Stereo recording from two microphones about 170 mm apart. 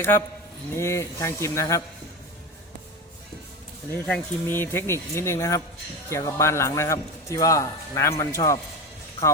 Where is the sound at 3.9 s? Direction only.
15° left (ahead or behind).